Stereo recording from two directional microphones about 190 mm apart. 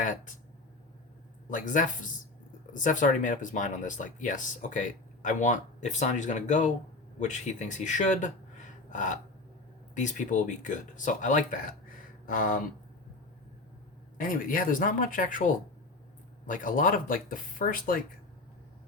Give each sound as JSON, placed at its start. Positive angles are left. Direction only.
{"t": 1.5, "sound": "speech", "side_deg": 40}
{"t": 8.9, "sound": "gasp", "side_deg": 40}
{"t": 9.9, "sound": "speech", "side_deg": 40}
{"t": 14.2, "sound": "speech", "side_deg": 45}
{"t": 16.5, "sound": "speech", "side_deg": 45}